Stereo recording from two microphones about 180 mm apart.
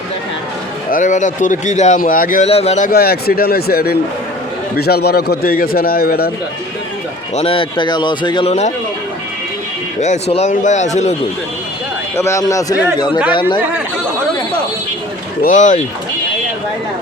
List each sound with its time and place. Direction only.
0.9 s speech: 45° left (ahead or behind)
2.5 s speech: 35° left (ahead or behind)
2.9 s a man's voice: 60° left (ahead or behind)
7.3 s speech: 30° left (ahead or behind)
10.0 s speech: 40° left (ahead or behind)
12.1 s a man's voice: 15° left (ahead or behind)
15.4 s speech: 45° left (ahead or behind)